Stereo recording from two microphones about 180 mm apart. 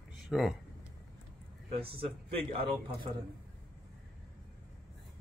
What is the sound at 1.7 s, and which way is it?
A man's voice, 30° right (ahead or behind).